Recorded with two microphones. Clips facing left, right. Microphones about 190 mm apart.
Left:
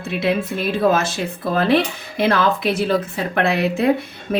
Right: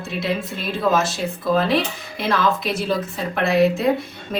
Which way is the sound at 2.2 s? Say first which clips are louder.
Left 3 dB; 60° left (ahead or behind).